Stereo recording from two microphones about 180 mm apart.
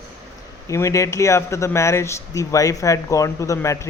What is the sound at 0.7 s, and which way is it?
Speech, 15° left (ahead or behind).